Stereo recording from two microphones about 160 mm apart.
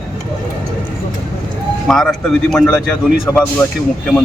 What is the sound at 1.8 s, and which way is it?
A man's voice, 5° left (ahead or behind).